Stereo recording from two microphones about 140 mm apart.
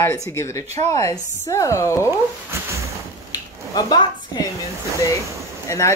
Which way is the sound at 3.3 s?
30° left (ahead or behind).